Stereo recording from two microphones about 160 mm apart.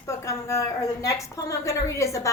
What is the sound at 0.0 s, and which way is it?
A woman's voice, 20° left (ahead or behind).